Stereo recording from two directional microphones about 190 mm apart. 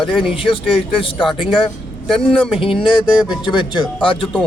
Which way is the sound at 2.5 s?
30° left (ahead or behind).